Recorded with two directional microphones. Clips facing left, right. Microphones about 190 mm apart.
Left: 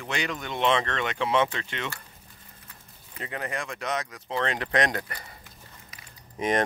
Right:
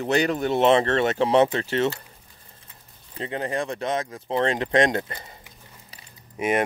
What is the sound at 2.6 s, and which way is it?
Speech, 30° right (ahead or behind).